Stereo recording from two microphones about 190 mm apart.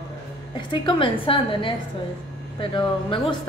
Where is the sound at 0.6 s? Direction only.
25° left (ahead or behind).